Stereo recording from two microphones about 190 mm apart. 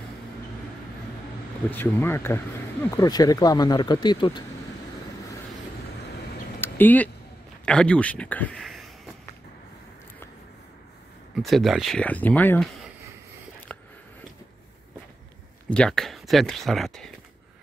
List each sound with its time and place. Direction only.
1.7 s speech: 10° left (ahead or behind)
6.6 s a sound: 10° left (ahead or behind)
7.6 s speech: 5° left (ahead or behind)
11.3 s speech: centre (ahead or behind)
13.7 s a sound: 10° left (ahead or behind)
15.7 s speech: 5° left (ahead or behind)